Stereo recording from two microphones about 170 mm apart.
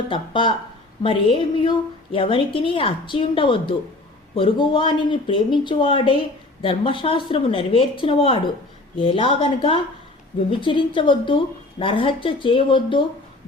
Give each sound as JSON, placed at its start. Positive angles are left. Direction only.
{"t": 0.1, "sound": "a woman's voice", "side_deg": 30}